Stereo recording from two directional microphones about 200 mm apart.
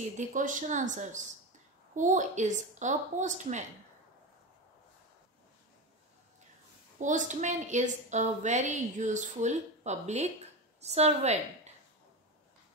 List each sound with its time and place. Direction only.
0.2 s a woman's voice: 40° right (ahead or behind)
7.0 s a woman's voice: 40° right (ahead or behind)